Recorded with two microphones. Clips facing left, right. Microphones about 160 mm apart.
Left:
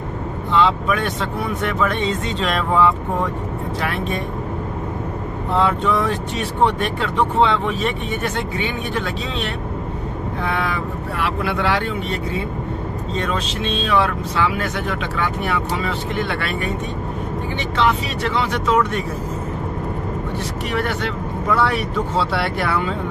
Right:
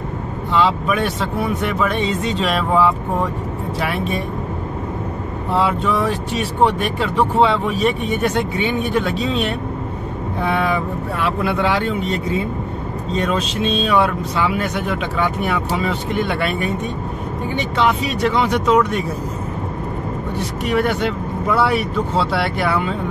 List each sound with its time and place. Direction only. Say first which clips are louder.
0.5 s speech: even; 5° right (ahead or behind)
5.5 s a man's voice: even; 5° right (ahead or behind)
17.7 s speech: right 1 dB; 15° right (ahead or behind)
20.7 s speech: right 5 dB; 15° right (ahead or behind)